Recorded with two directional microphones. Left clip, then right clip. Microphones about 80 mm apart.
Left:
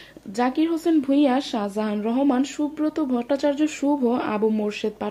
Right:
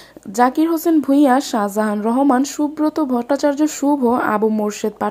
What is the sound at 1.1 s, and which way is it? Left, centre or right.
Speech, right.